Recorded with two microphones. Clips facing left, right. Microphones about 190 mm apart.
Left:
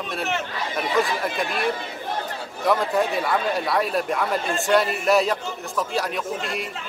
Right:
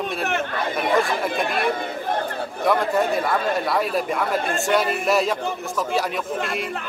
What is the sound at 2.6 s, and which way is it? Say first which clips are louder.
Speech: right 1 dB; centre (ahead or behind).